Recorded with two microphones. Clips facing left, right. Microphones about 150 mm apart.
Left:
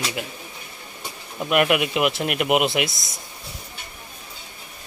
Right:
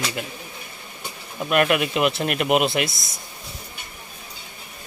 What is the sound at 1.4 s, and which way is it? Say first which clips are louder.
Speech: even; 15° left (ahead or behind).